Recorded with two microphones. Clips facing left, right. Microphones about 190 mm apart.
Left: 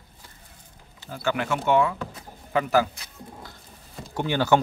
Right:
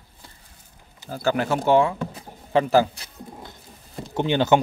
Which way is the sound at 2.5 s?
30° right (ahead or behind).